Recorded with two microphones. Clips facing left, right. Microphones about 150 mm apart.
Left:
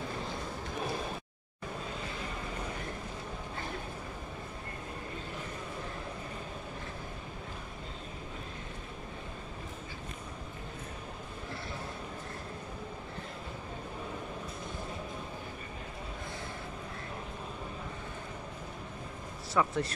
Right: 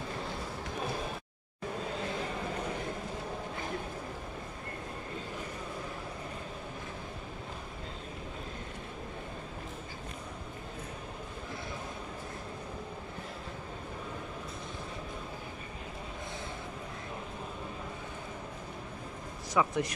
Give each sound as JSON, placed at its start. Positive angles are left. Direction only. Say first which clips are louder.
{"t": 19.5, "sound": "speech", "louder": "right 1 dB", "side_deg": -15}